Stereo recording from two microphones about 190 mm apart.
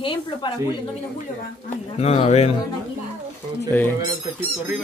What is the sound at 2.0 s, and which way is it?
Speech, 35° left (ahead or behind).